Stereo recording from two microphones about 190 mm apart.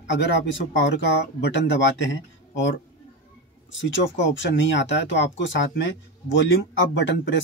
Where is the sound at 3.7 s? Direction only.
75° left (ahead or behind).